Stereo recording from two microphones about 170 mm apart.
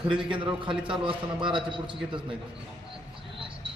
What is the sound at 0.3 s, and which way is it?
A man's voice, 30° right (ahead or behind).